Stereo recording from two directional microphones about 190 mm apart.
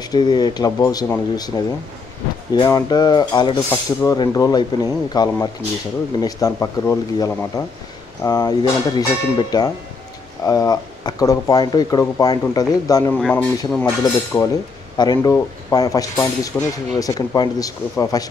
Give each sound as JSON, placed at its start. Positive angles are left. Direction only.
{"t": 0.1, "sound": "speech", "side_deg": 20}
{"t": 2.5, "sound": "speech", "side_deg": 20}
{"t": 13.1, "sound": "speech", "side_deg": 10}
{"t": 15.0, "sound": "speech", "side_deg": 20}